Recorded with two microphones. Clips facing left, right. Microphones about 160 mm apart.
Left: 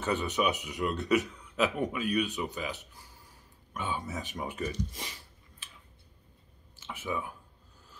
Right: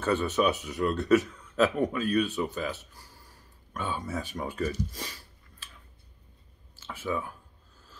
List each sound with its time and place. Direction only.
0.0 s a man's voice: 15° left (ahead or behind)
6.8 s speech: 20° left (ahead or behind)